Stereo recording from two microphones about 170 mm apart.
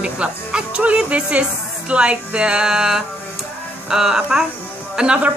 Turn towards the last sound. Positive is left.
turn(degrees=-5)  # may be behind; listen again after turning